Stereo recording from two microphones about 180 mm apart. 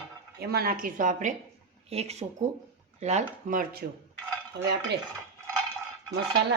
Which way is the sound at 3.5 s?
50° right (ahead or behind).